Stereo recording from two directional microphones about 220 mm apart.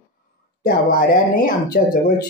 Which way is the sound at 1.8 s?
40° left (ahead or behind).